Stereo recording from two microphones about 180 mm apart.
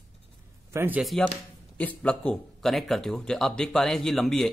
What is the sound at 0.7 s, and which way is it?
Speech, 10° right (ahead or behind).